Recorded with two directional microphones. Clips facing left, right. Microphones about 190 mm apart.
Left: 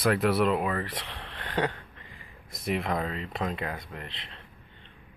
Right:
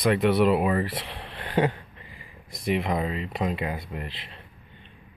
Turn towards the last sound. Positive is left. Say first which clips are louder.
# right 5 dB
turn(degrees=-10)  # may be behind; listen again after turning